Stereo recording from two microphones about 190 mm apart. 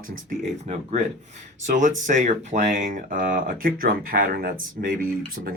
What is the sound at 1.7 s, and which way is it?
Speech, 40° right (ahead or behind).